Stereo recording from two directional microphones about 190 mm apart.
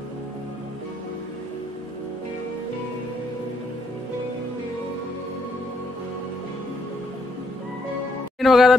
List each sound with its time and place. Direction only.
8.4 s speech: centre (ahead or behind)